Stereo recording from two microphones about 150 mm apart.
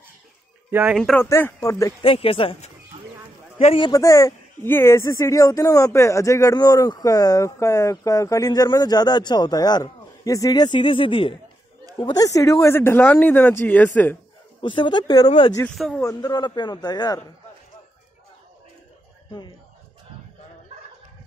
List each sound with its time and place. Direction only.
0.7 s speech: 10° right (ahead or behind)
0.9 s speech: 5° left (ahead or behind)
1.2 s speech: 20° left (ahead or behind)
2.0 s speech: 40° left (ahead or behind)
3.9 s speech: 20° left (ahead or behind); by 11.3 s 35° left (ahead or behind)
12.0 s speech: 25° left (ahead or behind)
14.6 s speech: 35° left (ahead or behind)
15.6 s speech: centre (ahead or behind)
16.0 s speech: 25° left (ahead or behind)